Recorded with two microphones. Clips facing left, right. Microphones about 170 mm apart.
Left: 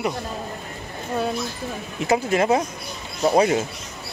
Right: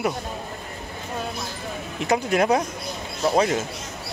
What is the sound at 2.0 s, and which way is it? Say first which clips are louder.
A man's voice: left 1 dB; 5° left (ahead or behind).